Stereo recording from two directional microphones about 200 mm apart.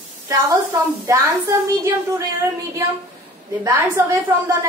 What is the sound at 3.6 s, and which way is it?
Speech, 15° right (ahead or behind).